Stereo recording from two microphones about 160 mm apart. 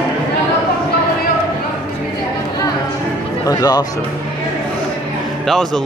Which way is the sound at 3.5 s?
25° left (ahead or behind).